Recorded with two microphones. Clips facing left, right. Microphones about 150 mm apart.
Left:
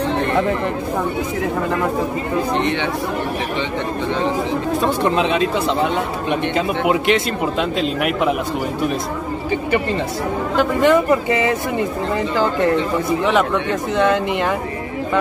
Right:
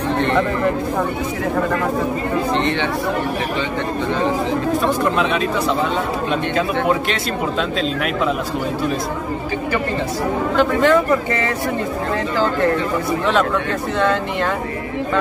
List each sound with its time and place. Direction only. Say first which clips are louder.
2.5 s speech: even; 15° left (ahead or behind)
6.5 s speech: even; 15° left (ahead or behind)
10.5 s speech: left 1 dB; 15° left (ahead or behind)
13.2 s speech: even; 15° left (ahead or behind)